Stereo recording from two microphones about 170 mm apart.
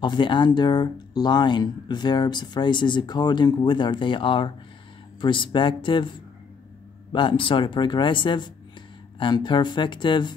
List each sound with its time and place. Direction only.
0.0 s speech: 30° left (ahead or behind)